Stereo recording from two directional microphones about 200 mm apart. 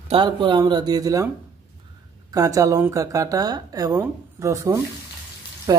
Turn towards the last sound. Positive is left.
turn(degrees=-20)  # may be behind; listen again after turning